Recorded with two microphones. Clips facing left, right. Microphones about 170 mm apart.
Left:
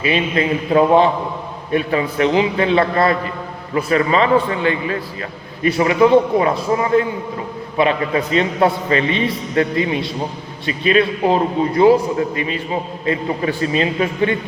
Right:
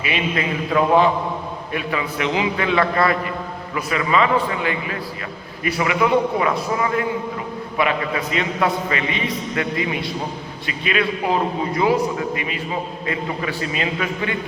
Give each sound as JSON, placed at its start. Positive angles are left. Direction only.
{"t": 0.0, "sound": "a man's voice", "side_deg": 35}
{"t": 13.6, "sound": "a man's voice", "side_deg": 30}